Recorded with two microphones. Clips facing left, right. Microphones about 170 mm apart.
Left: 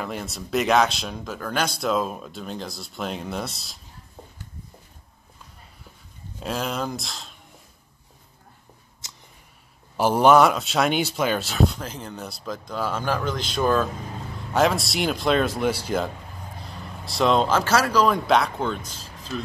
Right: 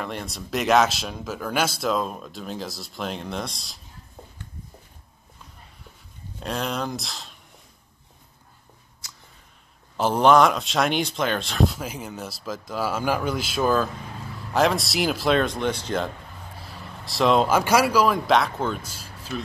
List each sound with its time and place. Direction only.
0.0 s speech: centre (ahead or behind)
6.4 s speech: centre (ahead or behind)
9.0 s a sound: 20° left (ahead or behind)
9.9 s speech: 10° left (ahead or behind)
16.5 s speech: 5° right (ahead or behind)